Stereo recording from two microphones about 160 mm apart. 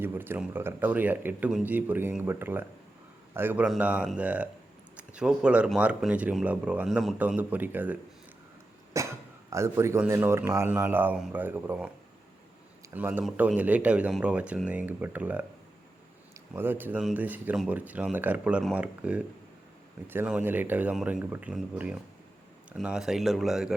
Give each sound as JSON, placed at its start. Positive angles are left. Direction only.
{"t": 0.0, "sound": "speech", "side_deg": -15}
{"t": 8.9, "sound": "speech", "side_deg": -20}
{"t": 12.9, "sound": "speech", "side_deg": -10}